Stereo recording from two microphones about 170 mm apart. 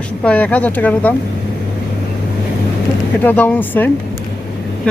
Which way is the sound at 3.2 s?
10° left (ahead or behind).